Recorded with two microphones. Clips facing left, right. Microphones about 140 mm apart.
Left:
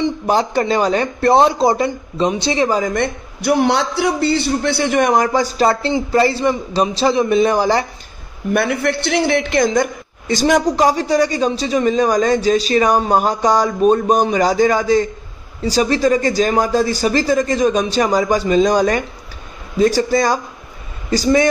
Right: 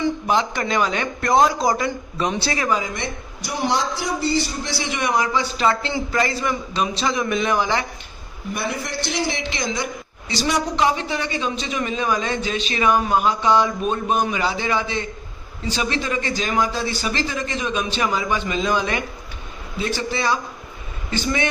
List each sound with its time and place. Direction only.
0.3 s a woman's voice: 35° left (ahead or behind)
2.8 s a man's voice: 50° left (ahead or behind); by 7.8 s 35° left (ahead or behind)
8.5 s a woman's voice: 65° left (ahead or behind); by 21.5 s 40° left (ahead or behind)